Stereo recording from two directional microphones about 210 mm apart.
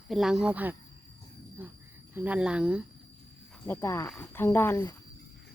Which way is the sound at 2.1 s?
5° right (ahead or behind).